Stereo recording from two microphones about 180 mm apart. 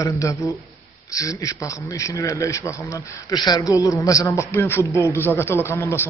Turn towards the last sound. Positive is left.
turn(degrees=10)  # may be behind; listen again after turning